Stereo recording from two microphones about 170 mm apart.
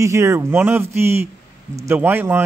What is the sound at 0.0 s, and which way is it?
Speech, 15° right (ahead or behind).